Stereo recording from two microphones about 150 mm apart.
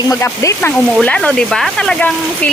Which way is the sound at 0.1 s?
20° left (ahead or behind).